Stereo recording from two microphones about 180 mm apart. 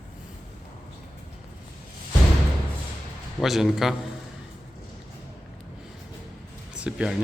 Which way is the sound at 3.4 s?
Centre (ahead or behind).